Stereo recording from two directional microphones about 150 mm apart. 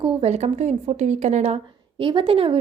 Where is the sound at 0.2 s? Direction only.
45° right (ahead or behind).